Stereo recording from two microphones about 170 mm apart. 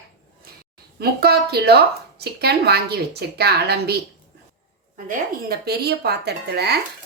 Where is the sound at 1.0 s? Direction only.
70° right (ahead or behind).